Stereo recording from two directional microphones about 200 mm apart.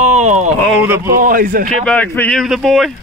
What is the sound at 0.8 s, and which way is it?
Speech, 10° right (ahead or behind).